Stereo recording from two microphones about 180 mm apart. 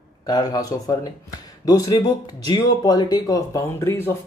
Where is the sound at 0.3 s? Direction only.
20° left (ahead or behind).